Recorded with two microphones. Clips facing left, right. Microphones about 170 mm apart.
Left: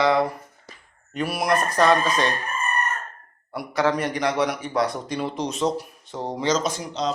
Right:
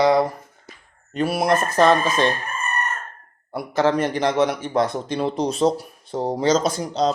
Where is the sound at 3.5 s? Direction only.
25° right (ahead or behind).